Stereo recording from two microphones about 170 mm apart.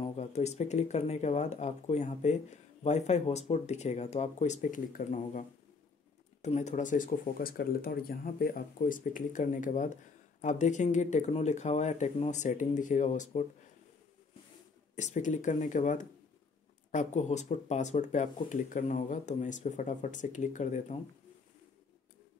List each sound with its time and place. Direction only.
0.0 s speech: 40° left (ahead or behind)
15.0 s speech: 45° left (ahead or behind)